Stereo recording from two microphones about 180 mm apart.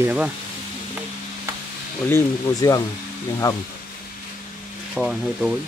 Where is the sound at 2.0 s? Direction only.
15° left (ahead or behind).